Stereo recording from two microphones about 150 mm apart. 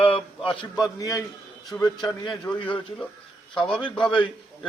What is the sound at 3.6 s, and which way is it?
Speech, 5° left (ahead or behind).